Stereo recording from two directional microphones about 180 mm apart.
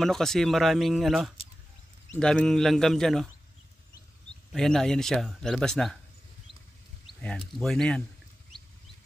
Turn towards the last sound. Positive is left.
turn(degrees=0)  # may be behind; listen again after turning